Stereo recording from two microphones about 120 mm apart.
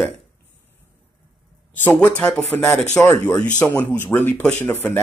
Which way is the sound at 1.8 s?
15° left (ahead or behind).